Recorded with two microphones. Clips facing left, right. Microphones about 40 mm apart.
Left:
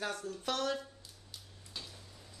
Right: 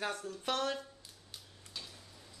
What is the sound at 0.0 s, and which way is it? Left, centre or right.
Speech, right.